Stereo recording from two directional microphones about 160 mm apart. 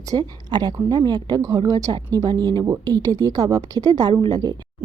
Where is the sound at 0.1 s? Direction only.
25° right (ahead or behind).